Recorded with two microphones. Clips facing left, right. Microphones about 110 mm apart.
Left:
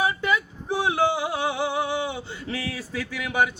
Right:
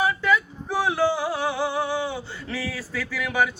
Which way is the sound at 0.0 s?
20° left (ahead or behind).